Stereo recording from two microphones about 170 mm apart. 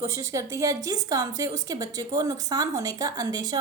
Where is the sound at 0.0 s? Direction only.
20° right (ahead or behind).